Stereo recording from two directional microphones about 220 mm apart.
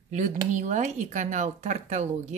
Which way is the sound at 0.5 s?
35° right (ahead or behind).